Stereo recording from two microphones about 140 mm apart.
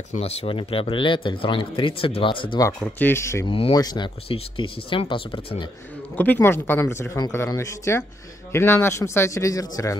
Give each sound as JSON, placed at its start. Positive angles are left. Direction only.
{"t": 0.1, "sound": "speech", "side_deg": 45}
{"t": 2.8, "sound": "speech", "side_deg": 15}
{"t": 3.4, "sound": "speech", "side_deg": 40}
{"t": 3.7, "sound": "speech", "side_deg": 30}
{"t": 6.1, "sound": "speech", "side_deg": 10}